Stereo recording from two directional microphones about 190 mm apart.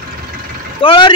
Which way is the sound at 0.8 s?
25° left (ahead or behind).